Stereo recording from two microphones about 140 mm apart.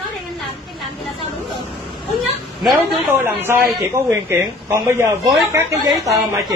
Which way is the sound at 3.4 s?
15° right (ahead or behind).